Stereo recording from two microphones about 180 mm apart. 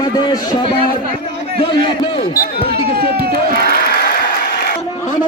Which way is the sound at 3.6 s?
60° left (ahead or behind).